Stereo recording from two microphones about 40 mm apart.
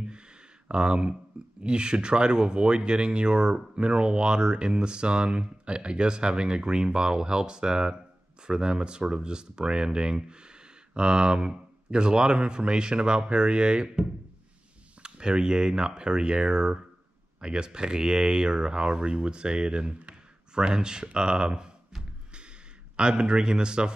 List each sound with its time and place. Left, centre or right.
0.7 s speech: right
22.9 s speech: right